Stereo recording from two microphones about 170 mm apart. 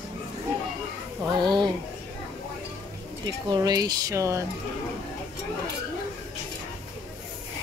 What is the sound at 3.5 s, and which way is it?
Speech, 20° right (ahead or behind).